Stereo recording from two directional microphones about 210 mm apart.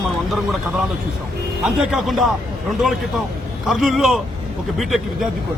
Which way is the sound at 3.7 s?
Centre (ahead or behind).